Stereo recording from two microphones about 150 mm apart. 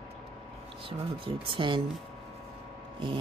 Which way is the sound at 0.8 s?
35° right (ahead or behind).